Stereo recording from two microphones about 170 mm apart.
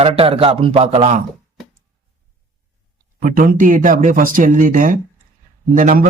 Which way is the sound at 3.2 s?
55° right (ahead or behind).